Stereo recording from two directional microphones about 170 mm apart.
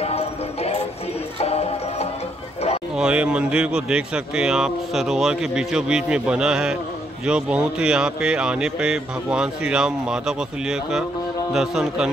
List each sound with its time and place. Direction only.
0.0 s music: 40° left (ahead or behind)
3.0 s speech: 5° right (ahead or behind)